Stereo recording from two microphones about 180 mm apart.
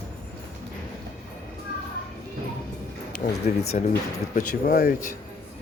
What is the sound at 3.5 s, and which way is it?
Speech, 45° left (ahead or behind).